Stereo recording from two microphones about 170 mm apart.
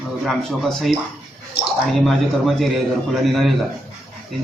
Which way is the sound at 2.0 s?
Centre (ahead or behind).